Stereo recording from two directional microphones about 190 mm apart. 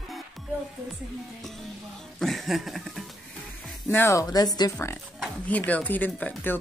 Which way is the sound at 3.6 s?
10° left (ahead or behind).